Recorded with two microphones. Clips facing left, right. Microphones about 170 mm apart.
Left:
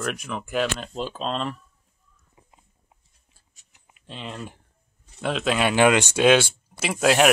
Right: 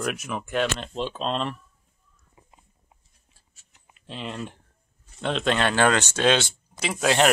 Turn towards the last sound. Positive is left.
turn(degrees=5)  # may be behind; listen again after turning